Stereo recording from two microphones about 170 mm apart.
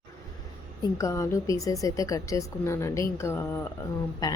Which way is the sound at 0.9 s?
20° left (ahead or behind).